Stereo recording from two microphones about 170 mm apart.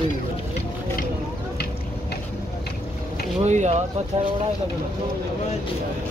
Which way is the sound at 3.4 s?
40° right (ahead or behind).